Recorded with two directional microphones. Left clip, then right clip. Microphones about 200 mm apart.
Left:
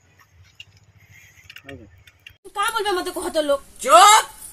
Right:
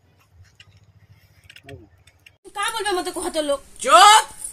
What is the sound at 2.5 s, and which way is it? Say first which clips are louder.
A woman's voice: left 2 dB; 15° right (ahead or behind).